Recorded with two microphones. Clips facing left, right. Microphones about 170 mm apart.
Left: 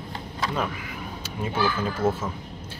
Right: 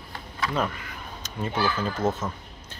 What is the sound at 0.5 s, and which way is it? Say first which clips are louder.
Speech: right 1 dB; 5° left (ahead or behind).